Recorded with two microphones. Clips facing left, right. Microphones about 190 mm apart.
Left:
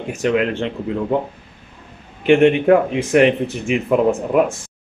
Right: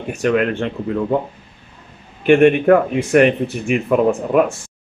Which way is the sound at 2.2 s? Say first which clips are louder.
Right 1 dB; 20° left (ahead or behind).